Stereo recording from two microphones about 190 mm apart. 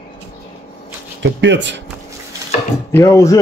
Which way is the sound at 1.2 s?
70° right (ahead or behind).